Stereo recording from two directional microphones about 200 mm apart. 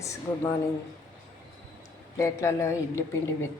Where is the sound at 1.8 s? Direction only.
15° left (ahead or behind).